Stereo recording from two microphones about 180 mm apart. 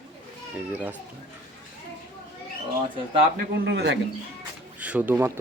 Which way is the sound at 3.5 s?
70° right (ahead or behind).